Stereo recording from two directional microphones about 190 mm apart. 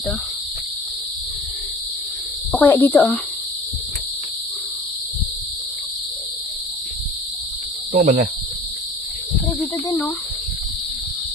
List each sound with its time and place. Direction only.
2.5 s speech: 10° left (ahead or behind)
7.9 s speech: 50° right (ahead or behind)